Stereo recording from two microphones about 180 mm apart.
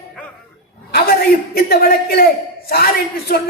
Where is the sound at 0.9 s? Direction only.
60° left (ahead or behind).